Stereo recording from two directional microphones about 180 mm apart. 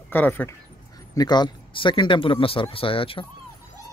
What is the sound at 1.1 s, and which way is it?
Speech, 25° left (ahead or behind).